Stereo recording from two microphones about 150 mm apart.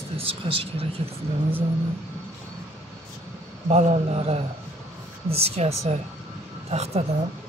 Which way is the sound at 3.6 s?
45° right (ahead or behind).